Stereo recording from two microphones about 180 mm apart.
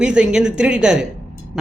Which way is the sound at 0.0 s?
5° right (ahead or behind).